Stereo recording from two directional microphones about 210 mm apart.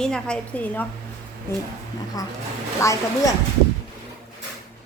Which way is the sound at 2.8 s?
15° left (ahead or behind).